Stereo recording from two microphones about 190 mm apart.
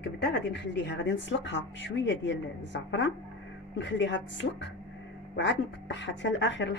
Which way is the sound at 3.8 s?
70° left (ahead or behind).